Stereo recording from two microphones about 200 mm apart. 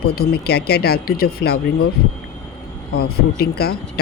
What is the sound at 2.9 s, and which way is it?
Speech, 50° left (ahead or behind).